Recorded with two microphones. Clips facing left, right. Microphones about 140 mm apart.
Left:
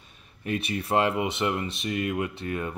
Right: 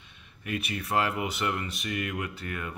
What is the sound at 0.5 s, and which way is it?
Speech, 30° left (ahead or behind).